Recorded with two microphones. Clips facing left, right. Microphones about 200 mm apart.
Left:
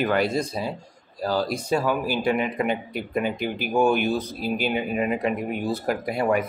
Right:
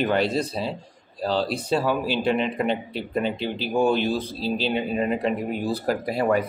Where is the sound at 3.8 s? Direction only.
30° right (ahead or behind).